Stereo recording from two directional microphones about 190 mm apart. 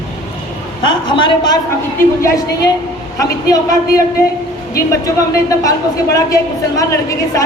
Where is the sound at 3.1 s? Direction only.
20° left (ahead or behind).